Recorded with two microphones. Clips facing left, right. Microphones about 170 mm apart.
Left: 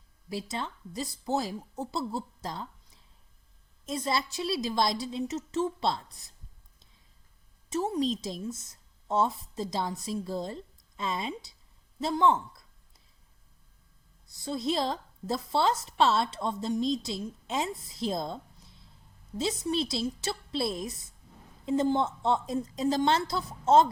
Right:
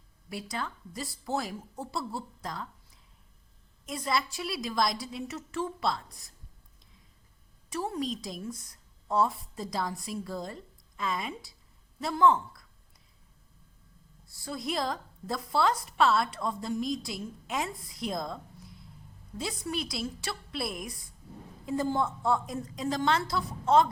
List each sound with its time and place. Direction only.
0.3 s a woman's voice: 25° left (ahead or behind)
3.8 s a woman's voice: 25° left (ahead or behind)
7.7 s a woman's voice: 20° left (ahead or behind)
14.3 s a woman's voice: 20° left (ahead or behind)